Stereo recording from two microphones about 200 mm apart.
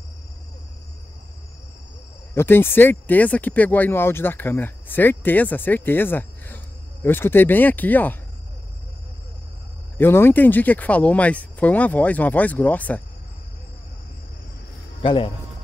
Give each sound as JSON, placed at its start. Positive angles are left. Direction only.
{"t": 2.3, "sound": "speech", "side_deg": 10}
{"t": 9.9, "sound": "speech", "side_deg": 10}
{"t": 15.0, "sound": "speech", "side_deg": 25}